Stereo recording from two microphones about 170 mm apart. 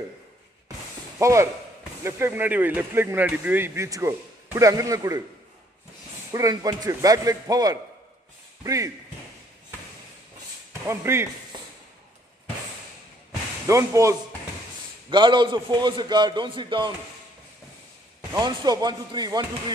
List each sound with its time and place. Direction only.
1.2 s a man's voice: 15° right (ahead or behind)
6.3 s a man's voice: 20° right (ahead or behind)
10.9 s speech: 15° right (ahead or behind)
13.7 s a man's voice: 20° right (ahead or behind)
18.3 s a man's voice: 25° right (ahead or behind)